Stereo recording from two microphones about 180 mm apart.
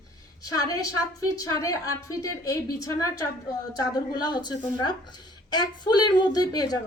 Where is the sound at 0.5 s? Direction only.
20° left (ahead or behind).